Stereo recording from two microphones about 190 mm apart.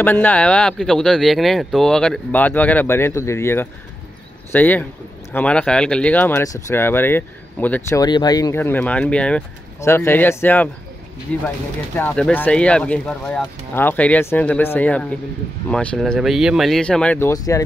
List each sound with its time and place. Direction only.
0.0 s speech: 10° left (ahead or behind)
8.0 s speech: 20° left (ahead or behind)
17.3 s speech: 15° left (ahead or behind)